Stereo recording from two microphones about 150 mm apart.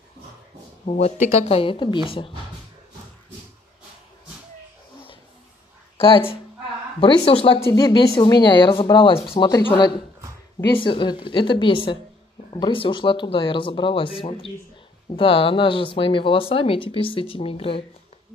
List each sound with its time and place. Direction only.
0.8 s speech: 45° left (ahead or behind)
5.9 s a woman's voice: 35° left (ahead or behind)